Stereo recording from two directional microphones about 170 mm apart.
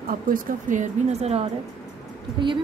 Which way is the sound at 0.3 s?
50° right (ahead or behind).